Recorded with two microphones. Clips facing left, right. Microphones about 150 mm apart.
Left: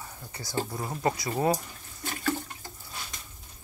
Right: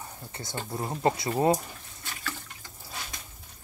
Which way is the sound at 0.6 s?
25° right (ahead or behind).